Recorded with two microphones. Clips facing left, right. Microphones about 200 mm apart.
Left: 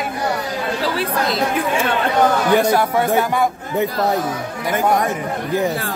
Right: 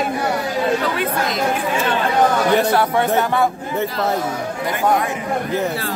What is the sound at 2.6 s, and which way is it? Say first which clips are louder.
A man's voice: even; 10° left (ahead or behind).